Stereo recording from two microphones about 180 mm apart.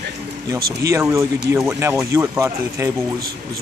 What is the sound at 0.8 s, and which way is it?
Speech, 15° right (ahead or behind).